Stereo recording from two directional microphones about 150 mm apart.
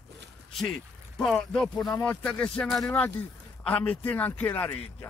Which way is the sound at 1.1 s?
5° left (ahead or behind).